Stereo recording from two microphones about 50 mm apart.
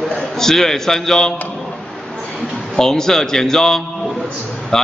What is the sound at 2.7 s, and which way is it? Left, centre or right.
A man's voice, centre.